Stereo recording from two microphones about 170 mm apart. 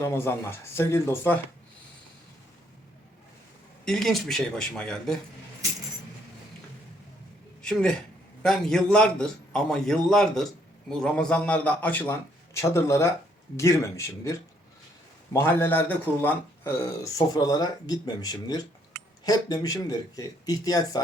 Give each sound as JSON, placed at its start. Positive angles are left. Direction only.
{"t": 0.0, "sound": "speech", "side_deg": 15}
{"t": 3.8, "sound": "a man's voice", "side_deg": 0}
{"t": 7.6, "sound": "a man's voice", "side_deg": 5}